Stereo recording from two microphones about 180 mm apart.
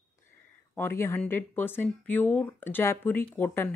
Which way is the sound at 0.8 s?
15° left (ahead or behind).